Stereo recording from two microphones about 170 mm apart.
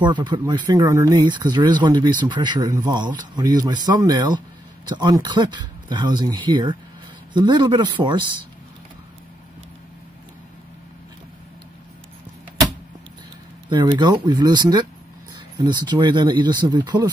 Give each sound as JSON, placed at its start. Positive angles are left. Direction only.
{"t": 0.0, "sound": "speech", "side_deg": -25}
{"t": 13.7, "sound": "speech", "side_deg": -25}